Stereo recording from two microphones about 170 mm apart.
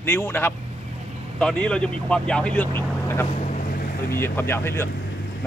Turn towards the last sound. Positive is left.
turn(degrees=15)  # may be behind; listen again after turning